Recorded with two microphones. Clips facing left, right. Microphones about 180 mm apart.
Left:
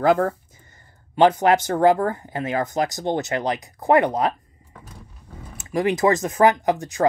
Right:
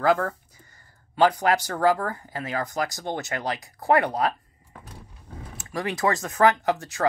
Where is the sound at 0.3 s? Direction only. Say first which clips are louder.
Left 6 dB; 20° left (ahead or behind).